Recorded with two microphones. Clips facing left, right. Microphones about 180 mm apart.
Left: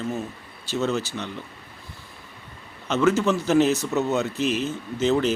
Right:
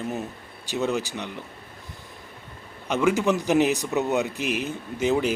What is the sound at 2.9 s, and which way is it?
Speech, 15° right (ahead or behind).